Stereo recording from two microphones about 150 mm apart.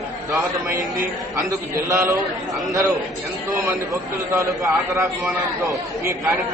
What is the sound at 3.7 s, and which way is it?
A man's voice, 20° right (ahead or behind).